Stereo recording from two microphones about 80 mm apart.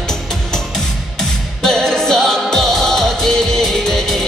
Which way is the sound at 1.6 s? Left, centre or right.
Centre.